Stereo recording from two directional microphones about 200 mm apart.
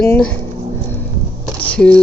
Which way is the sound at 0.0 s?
10° left (ahead or behind).